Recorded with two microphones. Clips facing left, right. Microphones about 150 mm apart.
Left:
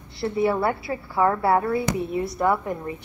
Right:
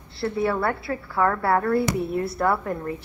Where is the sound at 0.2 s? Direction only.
20° left (ahead or behind).